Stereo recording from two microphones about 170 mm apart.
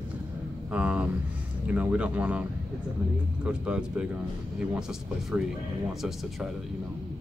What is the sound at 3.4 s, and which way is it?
Speech, 5° right (ahead or behind).